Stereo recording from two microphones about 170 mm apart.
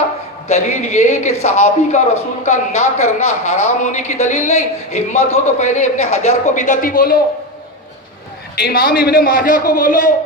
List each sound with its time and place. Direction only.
0.4 s a man's voice: 40° left (ahead or behind); by 7.2 s 55° left (ahead or behind)
8.5 s a man's voice: 65° left (ahead or behind)